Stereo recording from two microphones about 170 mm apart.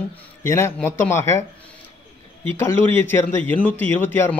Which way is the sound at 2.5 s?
15° left (ahead or behind).